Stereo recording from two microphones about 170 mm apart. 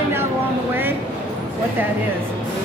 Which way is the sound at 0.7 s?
10° right (ahead or behind).